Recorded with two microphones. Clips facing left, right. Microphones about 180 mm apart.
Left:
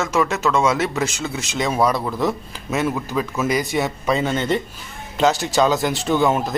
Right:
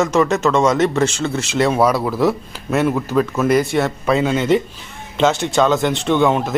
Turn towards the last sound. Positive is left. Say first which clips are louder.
# right 3 dB
turn(degrees=5)  # may be behind; listen again after turning